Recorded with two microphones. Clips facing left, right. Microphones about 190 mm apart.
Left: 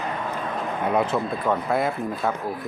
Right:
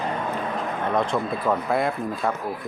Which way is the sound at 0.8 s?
10° left (ahead or behind).